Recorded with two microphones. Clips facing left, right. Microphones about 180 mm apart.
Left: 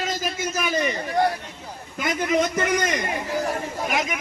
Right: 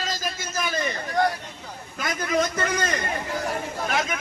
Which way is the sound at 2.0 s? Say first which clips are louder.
Left 3 dB; 20° left (ahead or behind).